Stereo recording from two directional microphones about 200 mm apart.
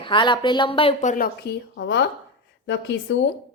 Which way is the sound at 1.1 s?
50° left (ahead or behind).